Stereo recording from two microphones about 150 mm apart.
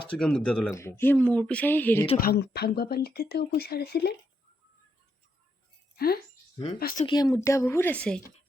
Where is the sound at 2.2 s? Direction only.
90° left.